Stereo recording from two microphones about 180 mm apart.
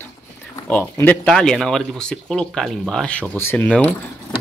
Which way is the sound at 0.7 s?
10° left (ahead or behind).